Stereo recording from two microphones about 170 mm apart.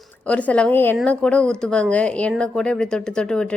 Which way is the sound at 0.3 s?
5° left (ahead or behind).